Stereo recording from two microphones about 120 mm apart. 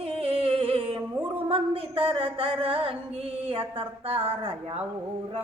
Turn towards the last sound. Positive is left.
turn(degrees=-50)  # may be behind; listen again after turning